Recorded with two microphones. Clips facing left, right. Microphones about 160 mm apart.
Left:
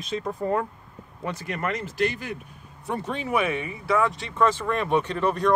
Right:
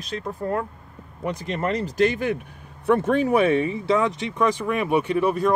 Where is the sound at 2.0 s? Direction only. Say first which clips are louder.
Right 7 dB; 50° right (ahead or behind); by 5.5 s 10° right (ahead or behind).